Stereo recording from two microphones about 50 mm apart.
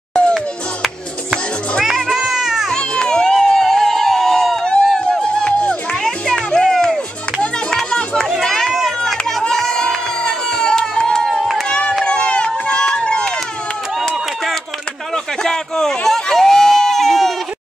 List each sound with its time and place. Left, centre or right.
2.0 s cat: centre
2.7 s crowd: centre
5.2 s music: left
6.0 s music: centre
7.9 s a sound: centre
8.3 s run: centre
9.5 s crowd: centre
11.9 s run: centre
14.0 s a sound: centre